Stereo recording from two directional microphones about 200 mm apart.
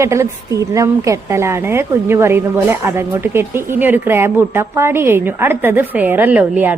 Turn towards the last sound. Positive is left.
turn(degrees=-5)  # may be behind; listen again after turning